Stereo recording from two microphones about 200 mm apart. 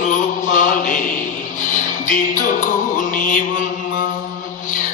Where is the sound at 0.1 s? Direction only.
40° left (ahead or behind).